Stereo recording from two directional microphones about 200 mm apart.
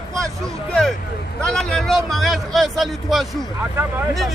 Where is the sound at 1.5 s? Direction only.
5° left (ahead or behind).